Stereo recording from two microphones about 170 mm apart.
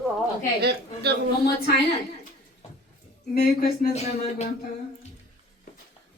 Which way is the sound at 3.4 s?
65° left (ahead or behind).